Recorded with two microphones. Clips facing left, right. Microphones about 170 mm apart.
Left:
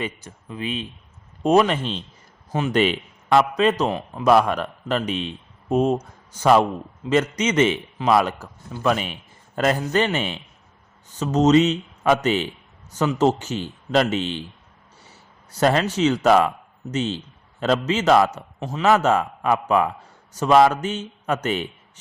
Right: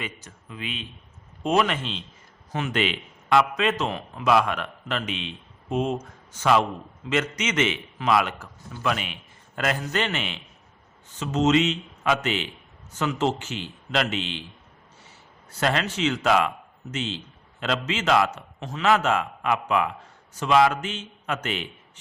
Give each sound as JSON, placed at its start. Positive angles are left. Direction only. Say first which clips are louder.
{"t": 0.0, "sound": "a man's voice", "louder": "left 6 dB", "side_deg": 30}
{"t": 15.6, "sound": "a man's voice", "louder": "left 6 dB", "side_deg": 40}